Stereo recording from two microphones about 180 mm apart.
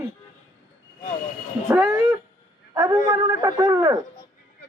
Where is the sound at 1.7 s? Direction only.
10° right (ahead or behind).